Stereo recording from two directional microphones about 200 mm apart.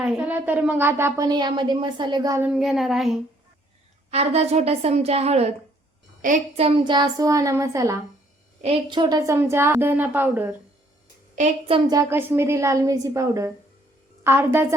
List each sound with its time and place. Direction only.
0.0 s a woman's voice: 5° right (ahead or behind)
2.5 s speech: centre (ahead or behind)
4.1 s a woman's voice: 30° right (ahead or behind); by 7.9 s 15° right (ahead or behind)
8.6 s a woman's voice: 25° right (ahead or behind); by 10.5 s 10° right (ahead or behind)
11.9 s a woman's voice: 15° right (ahead or behind)